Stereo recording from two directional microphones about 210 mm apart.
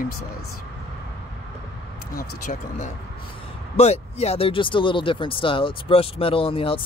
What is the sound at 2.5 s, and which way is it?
Speech, 35° left (ahead or behind).